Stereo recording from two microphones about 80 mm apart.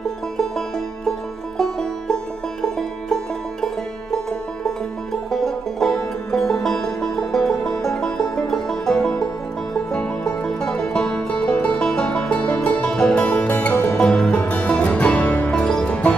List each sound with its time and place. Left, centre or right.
0.4 s music: centre
3.6 s music: centre